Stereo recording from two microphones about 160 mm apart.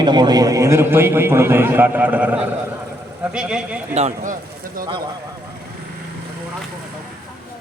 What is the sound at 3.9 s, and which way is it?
Speech, 50° right (ahead or behind).